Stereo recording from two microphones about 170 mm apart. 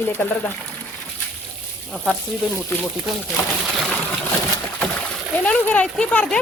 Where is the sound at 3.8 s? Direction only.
Centre (ahead or behind).